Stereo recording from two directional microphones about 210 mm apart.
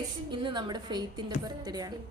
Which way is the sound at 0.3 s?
20° right (ahead or behind).